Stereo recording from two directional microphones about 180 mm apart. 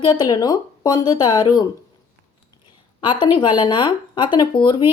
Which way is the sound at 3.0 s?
25° left (ahead or behind).